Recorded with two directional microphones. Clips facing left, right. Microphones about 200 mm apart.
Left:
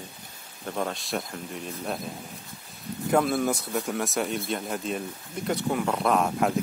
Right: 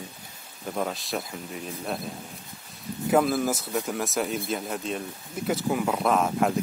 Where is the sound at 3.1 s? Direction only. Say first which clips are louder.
Right 1 dB; 5° right (ahead or behind).